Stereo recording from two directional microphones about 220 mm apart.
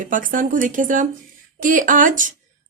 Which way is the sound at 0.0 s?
35° right (ahead or behind).